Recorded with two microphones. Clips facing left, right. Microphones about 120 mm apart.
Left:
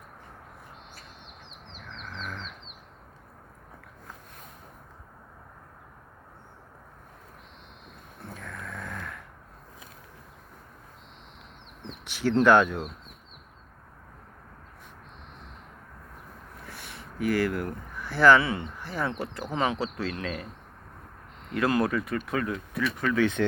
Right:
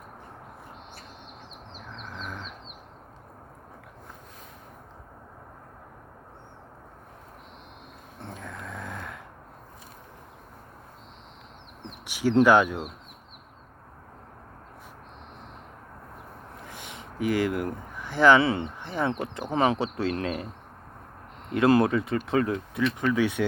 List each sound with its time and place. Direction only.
1.8 s a sound: 15° right (ahead or behind)
8.2 s snoring: 20° right (ahead or behind)
12.0 s speech: 10° right (ahead or behind)
16.6 s speech: 20° right (ahead or behind)
21.5 s speech: 25° right (ahead or behind)
23.0 s speech: 15° right (ahead or behind)